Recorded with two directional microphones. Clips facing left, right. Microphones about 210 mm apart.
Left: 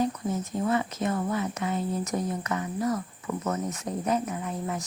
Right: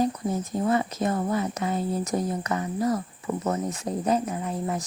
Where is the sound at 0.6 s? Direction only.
35° right (ahead or behind).